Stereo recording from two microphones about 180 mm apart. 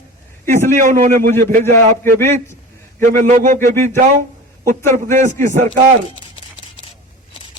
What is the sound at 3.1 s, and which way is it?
Speech, 45° right (ahead or behind).